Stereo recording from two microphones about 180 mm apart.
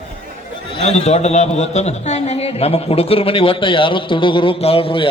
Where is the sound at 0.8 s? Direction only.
35° left (ahead or behind).